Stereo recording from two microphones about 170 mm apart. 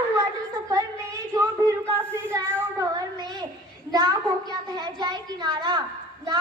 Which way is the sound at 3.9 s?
20° right (ahead or behind).